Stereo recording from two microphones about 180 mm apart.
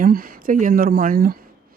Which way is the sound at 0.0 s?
55° right (ahead or behind).